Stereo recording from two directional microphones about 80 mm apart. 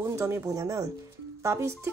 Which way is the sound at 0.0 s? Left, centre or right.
Right.